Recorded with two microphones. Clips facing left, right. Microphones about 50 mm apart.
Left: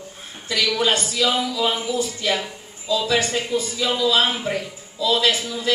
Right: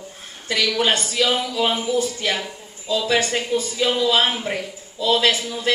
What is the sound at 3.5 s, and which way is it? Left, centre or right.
A man's voice, right.